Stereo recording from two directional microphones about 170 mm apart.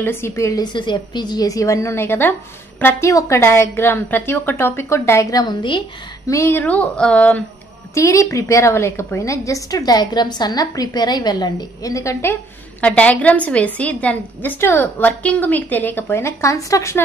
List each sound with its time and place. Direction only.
0.0 s a woman's voice: 15° left (ahead or behind)
7.9 s a woman's voice: 20° left (ahead or behind)